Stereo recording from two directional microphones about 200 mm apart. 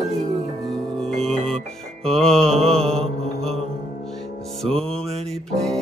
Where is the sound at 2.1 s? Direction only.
5° left (ahead or behind).